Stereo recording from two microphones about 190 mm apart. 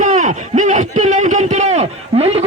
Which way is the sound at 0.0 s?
40° right (ahead or behind).